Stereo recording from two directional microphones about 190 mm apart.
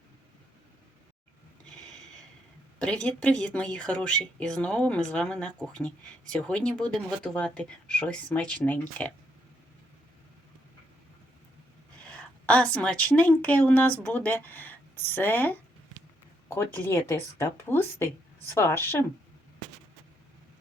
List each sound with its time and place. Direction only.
2.7 s speech: 5° left (ahead or behind)
12.0 s a woman's voice: 5° left (ahead or behind)